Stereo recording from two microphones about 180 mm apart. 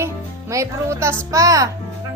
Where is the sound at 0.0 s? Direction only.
15° right (ahead or behind).